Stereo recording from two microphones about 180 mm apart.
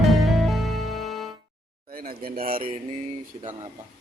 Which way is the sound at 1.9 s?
55° right (ahead or behind).